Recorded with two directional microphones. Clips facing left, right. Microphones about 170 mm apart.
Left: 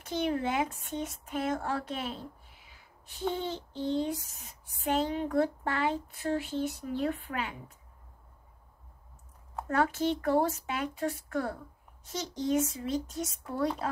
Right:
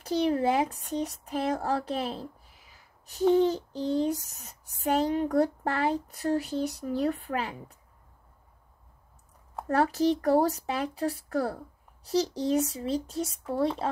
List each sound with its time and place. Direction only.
0.0 s speech: 35° right (ahead or behind)
9.7 s speech: 35° right (ahead or behind)